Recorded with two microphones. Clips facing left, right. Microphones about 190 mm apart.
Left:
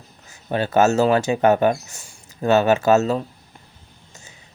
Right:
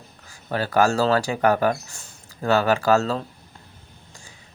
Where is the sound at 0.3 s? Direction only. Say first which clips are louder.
Left 3 dB; 20° left (ahead or behind).